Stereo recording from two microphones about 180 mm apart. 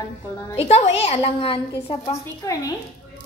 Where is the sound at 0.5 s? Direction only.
35° left (ahead or behind).